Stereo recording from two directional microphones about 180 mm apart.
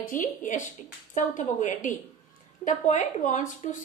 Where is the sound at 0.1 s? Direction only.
45° left (ahead or behind).